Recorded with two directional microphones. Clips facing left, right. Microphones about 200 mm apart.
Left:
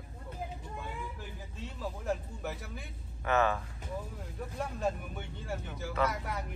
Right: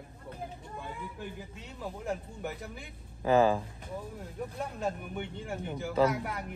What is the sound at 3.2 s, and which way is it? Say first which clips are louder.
Speech: right 5 dB; 30° right (ahead or behind).